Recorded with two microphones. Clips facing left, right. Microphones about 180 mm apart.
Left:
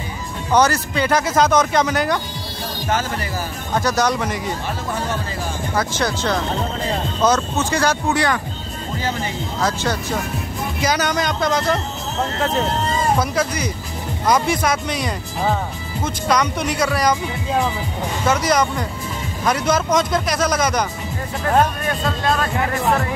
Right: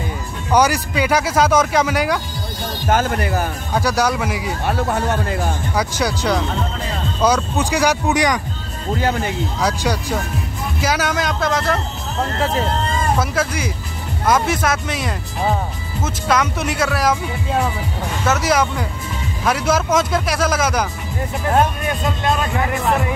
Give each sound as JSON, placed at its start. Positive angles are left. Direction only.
{"t": 0.5, "sound": "speech", "side_deg": -10}
{"t": 2.9, "sound": "speech", "side_deg": -55}
{"t": 3.7, "sound": "speech", "side_deg": -10}
{"t": 4.6, "sound": "speech", "side_deg": -60}
{"t": 5.8, "sound": "speech", "side_deg": -10}
{"t": 9.6, "sound": "speech", "side_deg": -10}
{"t": 13.2, "sound": "speech", "side_deg": -5}
{"t": 21.8, "sound": "speech", "side_deg": -20}